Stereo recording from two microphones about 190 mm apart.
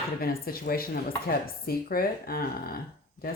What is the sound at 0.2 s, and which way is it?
A woman's voice, 50° left (ahead or behind).